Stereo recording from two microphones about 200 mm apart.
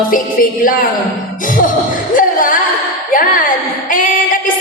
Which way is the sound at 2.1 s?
40° left (ahead or behind).